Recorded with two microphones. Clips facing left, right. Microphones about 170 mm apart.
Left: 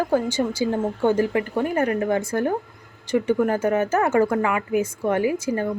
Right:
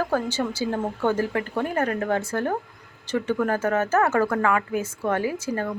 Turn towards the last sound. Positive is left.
turn(degrees=15)  # may be behind; listen again after turning